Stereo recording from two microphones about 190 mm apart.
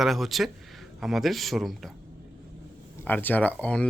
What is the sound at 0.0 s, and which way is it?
Speech, centre (ahead or behind).